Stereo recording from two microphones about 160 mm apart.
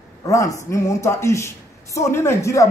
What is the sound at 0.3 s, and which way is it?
Speech, 20° left (ahead or behind).